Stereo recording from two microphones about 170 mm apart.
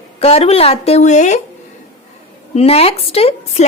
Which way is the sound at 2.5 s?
35° left (ahead or behind).